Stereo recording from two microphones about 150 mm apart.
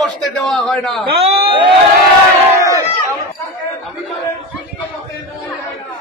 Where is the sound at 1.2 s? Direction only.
35° right (ahead or behind).